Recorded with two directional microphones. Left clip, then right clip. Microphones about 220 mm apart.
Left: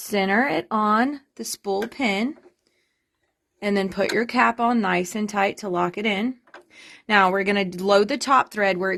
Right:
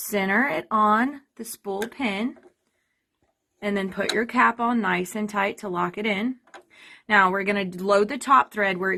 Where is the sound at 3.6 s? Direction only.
50° left (ahead or behind).